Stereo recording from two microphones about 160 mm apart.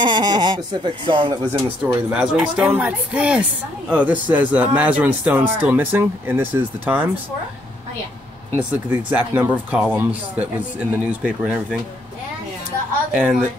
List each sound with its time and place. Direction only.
0.0 s speech: 30° right (ahead or behind)
1.9 s speech: 10° right (ahead or behind)
8.5 s speech: 10° right (ahead or behind)
13.1 s speech: 10° right (ahead or behind)